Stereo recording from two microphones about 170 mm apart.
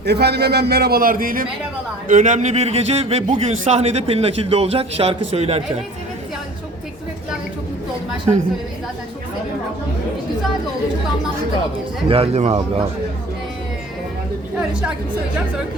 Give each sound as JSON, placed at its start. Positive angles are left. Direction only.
{"t": 0.0, "sound": "a man's voice", "side_deg": -75}
{"t": 12.0, "sound": "a man's voice", "side_deg": -35}
{"t": 14.7, "sound": "a woman's voice", "side_deg": -5}